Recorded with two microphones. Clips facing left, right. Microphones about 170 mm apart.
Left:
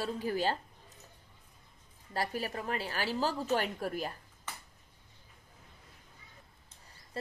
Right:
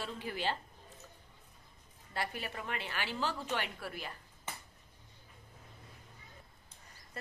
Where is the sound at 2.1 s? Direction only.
40° left (ahead or behind).